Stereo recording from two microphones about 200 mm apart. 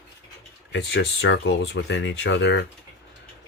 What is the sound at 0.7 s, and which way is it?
Speech, 60° left (ahead or behind).